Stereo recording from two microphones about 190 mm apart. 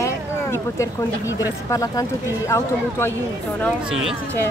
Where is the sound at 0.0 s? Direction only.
15° left (ahead or behind).